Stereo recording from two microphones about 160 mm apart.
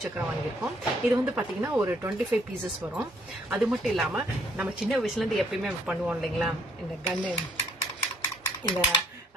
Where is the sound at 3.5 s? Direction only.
Centre (ahead or behind).